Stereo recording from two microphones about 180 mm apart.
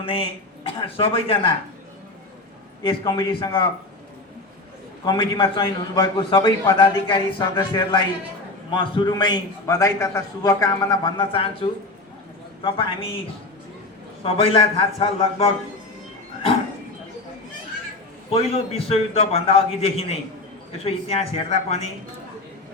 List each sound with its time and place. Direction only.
0.0 s a man's voice: 30° left (ahead or behind)
2.8 s a man's voice: 25° left (ahead or behind)
5.0 s a man's voice: 25° left (ahead or behind)
12.6 s a man's voice: 30° left (ahead or behind)
14.3 s a man's voice: 30° left (ahead or behind)
18.3 s a man's voice: 35° left (ahead or behind)